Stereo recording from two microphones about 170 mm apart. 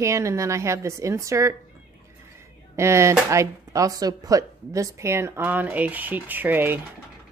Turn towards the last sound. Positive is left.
turn(degrees=-10)  # may be behind; listen again after turning